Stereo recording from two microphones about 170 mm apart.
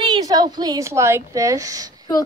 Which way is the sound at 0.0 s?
25° right (ahead or behind).